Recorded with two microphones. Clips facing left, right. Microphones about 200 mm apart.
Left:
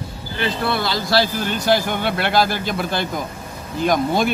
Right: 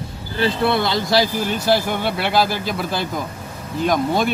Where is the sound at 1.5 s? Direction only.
5° right (ahead or behind).